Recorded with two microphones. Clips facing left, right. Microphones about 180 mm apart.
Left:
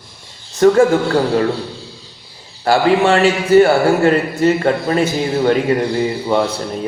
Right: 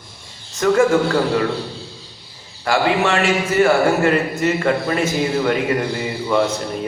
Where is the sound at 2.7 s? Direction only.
35° left (ahead or behind).